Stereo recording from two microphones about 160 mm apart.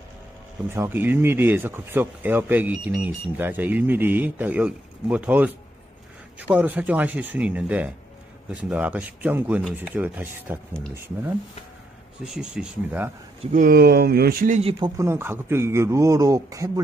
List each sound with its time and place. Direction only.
0.7 s speech: 15° right (ahead or behind)
12.4 s speech: 10° right (ahead or behind)
13.5 s speech: 60° right (ahead or behind)
14.5 s speech: 35° right (ahead or behind)
15.0 s speech: 15° right (ahead or behind)